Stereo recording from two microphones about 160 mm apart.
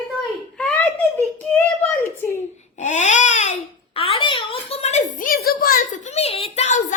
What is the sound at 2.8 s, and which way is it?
Babbling, 50° left (ahead or behind).